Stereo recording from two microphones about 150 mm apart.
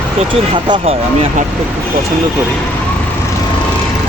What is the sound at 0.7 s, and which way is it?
Speech, 40° right (ahead or behind).